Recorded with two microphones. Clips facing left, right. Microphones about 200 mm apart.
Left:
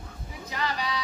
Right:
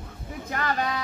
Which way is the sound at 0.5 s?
50° right (ahead or behind).